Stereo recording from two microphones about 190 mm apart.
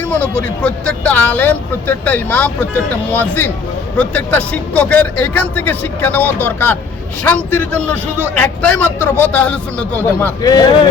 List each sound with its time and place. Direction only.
0.0 s speech: 5° left (ahead or behind)
10.5 s speech: 20° left (ahead or behind)